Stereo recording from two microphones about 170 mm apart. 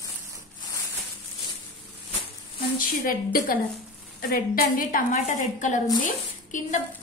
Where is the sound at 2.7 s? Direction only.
55° left (ahead or behind).